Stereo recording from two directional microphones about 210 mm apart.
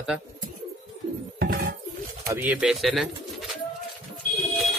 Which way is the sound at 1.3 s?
45° right (ahead or behind).